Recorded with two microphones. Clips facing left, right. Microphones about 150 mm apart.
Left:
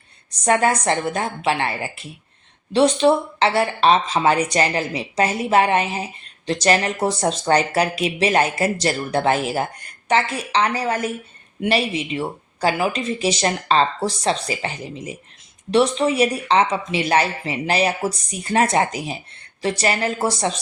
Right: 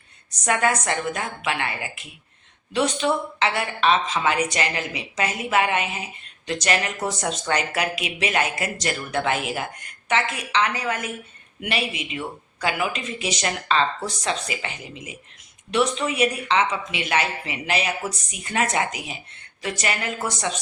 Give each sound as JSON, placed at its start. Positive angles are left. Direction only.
{"t": 0.4, "sound": "speech", "side_deg": 30}